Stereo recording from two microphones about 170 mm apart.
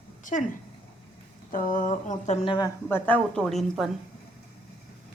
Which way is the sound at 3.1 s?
5° left (ahead or behind).